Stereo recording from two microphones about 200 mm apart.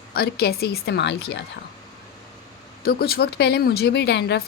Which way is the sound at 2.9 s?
50° left (ahead or behind).